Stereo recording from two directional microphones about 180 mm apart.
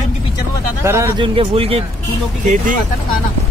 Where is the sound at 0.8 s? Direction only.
15° right (ahead or behind).